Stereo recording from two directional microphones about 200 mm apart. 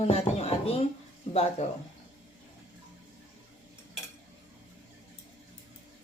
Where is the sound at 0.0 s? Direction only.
30° left (ahead or behind).